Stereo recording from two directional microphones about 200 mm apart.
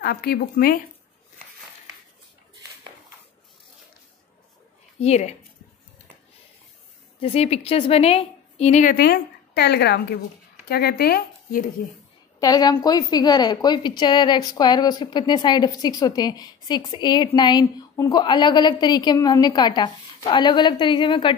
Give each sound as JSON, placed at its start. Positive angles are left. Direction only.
{"t": 0.0, "sound": "a woman's voice", "side_deg": 50}
{"t": 5.0, "sound": "a woman's voice", "side_deg": 35}
{"t": 7.2, "sound": "a woman's voice", "side_deg": 30}
{"t": 12.4, "sound": "a woman's voice", "side_deg": 20}